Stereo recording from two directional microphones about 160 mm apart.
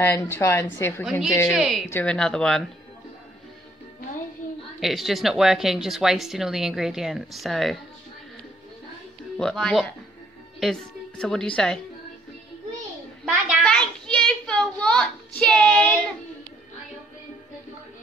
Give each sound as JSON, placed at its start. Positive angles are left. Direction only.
{"t": 0.0, "sound": "speech", "side_deg": 15}
{"t": 1.5, "sound": "speech", "side_deg": 0}
{"t": 1.9, "sound": "speech", "side_deg": 10}
{"t": 4.7, "sound": "speech", "side_deg": 0}
{"t": 9.4, "sound": "a woman's voice", "side_deg": 5}
{"t": 13.2, "sound": "a sound", "side_deg": -5}